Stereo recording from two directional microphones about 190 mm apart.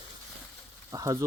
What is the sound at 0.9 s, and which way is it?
Speech, 15° right (ahead or behind).